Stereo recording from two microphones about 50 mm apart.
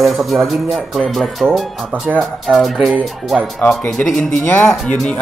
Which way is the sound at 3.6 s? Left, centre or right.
Left.